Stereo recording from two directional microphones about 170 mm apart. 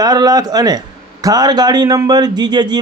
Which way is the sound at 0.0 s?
25° right (ahead or behind).